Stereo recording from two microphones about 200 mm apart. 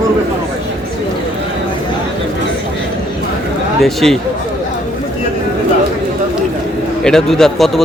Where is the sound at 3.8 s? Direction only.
Centre (ahead or behind).